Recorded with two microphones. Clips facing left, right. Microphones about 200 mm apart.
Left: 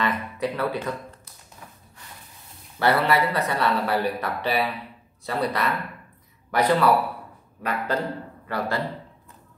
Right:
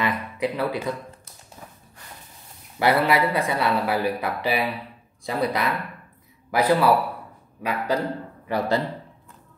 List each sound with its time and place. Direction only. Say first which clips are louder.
0.0 s speech: right 1 dB; 10° right (ahead or behind)
2.8 s speech: right 1 dB; 10° right (ahead or behind)